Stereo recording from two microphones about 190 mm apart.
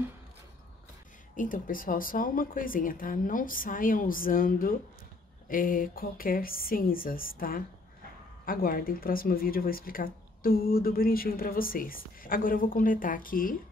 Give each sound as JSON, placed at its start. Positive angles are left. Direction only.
{"t": 1.3, "sound": "speech", "side_deg": 45}